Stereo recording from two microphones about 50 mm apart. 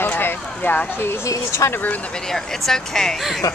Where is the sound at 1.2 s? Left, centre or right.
Left.